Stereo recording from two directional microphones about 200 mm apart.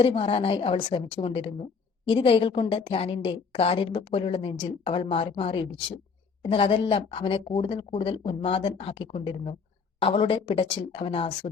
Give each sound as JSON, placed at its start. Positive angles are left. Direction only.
{"t": 0.0, "sound": "speech", "side_deg": 30}